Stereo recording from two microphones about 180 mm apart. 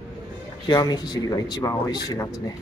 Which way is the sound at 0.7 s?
20° left (ahead or behind).